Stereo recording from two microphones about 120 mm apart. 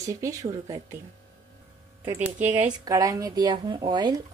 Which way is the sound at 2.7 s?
30° right (ahead or behind).